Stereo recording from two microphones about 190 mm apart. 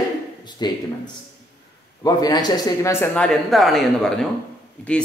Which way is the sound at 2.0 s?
20° left (ahead or behind).